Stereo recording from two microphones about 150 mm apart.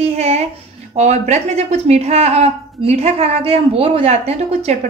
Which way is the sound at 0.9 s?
50° right (ahead or behind).